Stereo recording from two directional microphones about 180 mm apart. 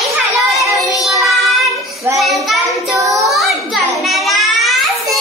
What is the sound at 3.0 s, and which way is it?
Child singing, 20° right (ahead or behind).